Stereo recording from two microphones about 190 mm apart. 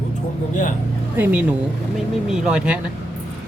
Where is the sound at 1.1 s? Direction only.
10° right (ahead or behind).